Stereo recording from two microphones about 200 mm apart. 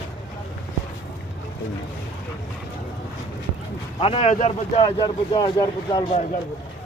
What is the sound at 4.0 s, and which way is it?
Speech, 30° left (ahead or behind).